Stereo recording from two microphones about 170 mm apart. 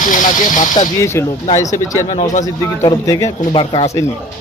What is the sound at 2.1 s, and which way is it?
Speech, 40° left (ahead or behind).